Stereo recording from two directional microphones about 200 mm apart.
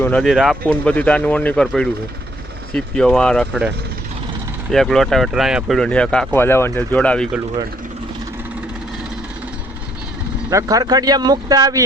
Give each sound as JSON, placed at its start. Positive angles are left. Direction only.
{"t": 0.0, "sound": "speech", "side_deg": 5}
{"t": 4.7, "sound": "speech", "side_deg": 0}
{"t": 10.5, "sound": "speech", "side_deg": -15}